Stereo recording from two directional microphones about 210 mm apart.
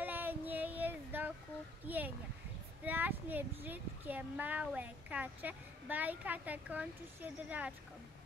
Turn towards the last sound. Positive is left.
turn(degrees=-5)  # may be behind; listen again after turning